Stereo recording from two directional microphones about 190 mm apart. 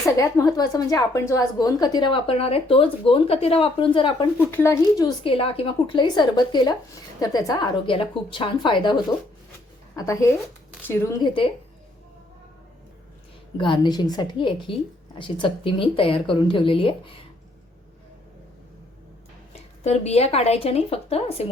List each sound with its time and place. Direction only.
0.0 s a woman's voice: 15° left (ahead or behind)
4.4 s a woman's voice: 10° left (ahead or behind)
13.6 s a woman's voice: 25° left (ahead or behind)
19.8 s a woman's voice: 35° left (ahead or behind)